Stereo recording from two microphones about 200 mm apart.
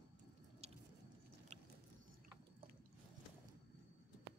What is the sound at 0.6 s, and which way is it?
Squish, 30° right (ahead or behind).